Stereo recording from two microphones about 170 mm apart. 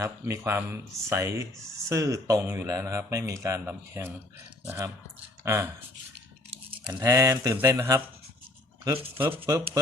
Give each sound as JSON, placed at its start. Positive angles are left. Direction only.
{"t": 0.0, "sound": "speech", "side_deg": -15}
{"t": 6.9, "sound": "speech", "side_deg": -20}